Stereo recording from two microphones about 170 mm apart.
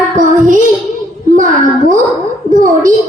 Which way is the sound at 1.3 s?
50° right (ahead or behind).